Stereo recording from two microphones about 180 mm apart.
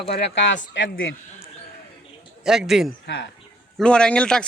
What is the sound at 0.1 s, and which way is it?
Speech, 70° left (ahead or behind).